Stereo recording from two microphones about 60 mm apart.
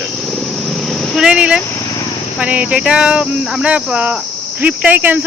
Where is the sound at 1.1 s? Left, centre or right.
Centre.